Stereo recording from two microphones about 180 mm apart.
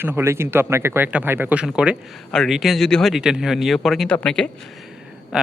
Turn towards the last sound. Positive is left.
turn(degrees=-5)  # may be behind; listen again after turning